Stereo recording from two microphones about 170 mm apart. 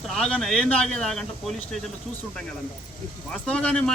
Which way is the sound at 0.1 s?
5° left (ahead or behind).